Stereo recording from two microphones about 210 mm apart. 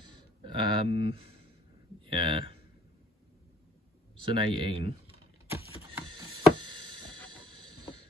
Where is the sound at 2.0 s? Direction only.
25° right (ahead or behind).